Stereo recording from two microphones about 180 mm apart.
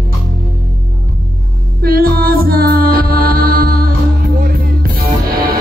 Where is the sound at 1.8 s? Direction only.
55° right (ahead or behind).